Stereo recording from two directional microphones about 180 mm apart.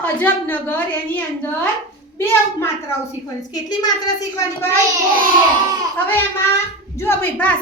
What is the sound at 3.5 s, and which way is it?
A woman's voice, 20° left (ahead or behind).